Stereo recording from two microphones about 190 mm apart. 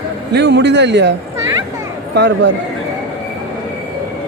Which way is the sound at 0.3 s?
65° right (ahead or behind).